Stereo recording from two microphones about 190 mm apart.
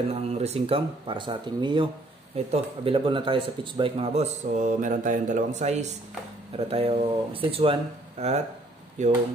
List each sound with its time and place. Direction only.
0.1 s speech: 35° right (ahead or behind)